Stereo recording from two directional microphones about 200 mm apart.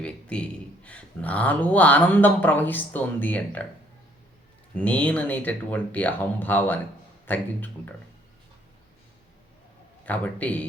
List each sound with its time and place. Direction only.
0.0 s speech: 5° left (ahead or behind)
4.7 s speech: 5° left (ahead or behind)
10.1 s speech: 5° left (ahead or behind)